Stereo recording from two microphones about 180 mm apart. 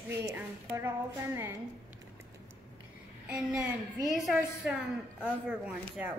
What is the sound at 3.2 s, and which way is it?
A woman's voice, 5° right (ahead or behind).